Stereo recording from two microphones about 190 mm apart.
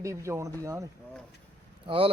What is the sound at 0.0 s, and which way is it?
Speech, 15° right (ahead or behind).